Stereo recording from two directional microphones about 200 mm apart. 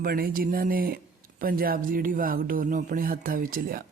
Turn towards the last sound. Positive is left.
turn(degrees=-45)  # may be behind; listen again after turning